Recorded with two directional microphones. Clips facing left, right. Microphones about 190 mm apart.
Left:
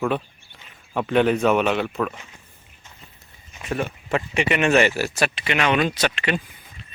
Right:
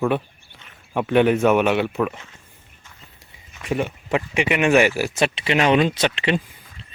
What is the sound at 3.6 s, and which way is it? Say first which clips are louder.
Speech: right 2 dB; 15° right (ahead or behind).